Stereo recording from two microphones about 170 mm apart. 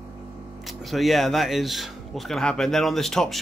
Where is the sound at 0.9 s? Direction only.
Centre (ahead or behind).